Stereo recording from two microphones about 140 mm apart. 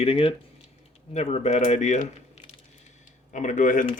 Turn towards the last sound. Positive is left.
turn(degrees=65)  # may be behind; listen again after turning